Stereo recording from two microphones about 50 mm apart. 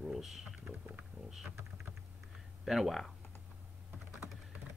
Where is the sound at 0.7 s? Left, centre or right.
Right.